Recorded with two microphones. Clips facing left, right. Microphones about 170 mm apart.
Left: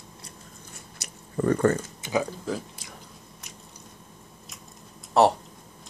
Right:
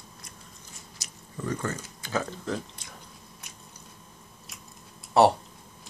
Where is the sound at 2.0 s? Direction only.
15° left (ahead or behind).